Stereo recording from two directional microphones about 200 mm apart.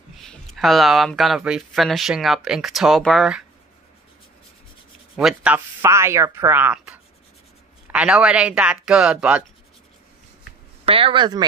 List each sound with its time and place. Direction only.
0.2 s speech: centre (ahead or behind)
5.1 s speech: 5° right (ahead or behind)
10.9 s speech: 25° right (ahead or behind)